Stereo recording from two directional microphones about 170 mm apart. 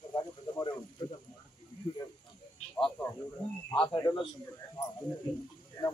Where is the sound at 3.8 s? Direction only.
30° left (ahead or behind).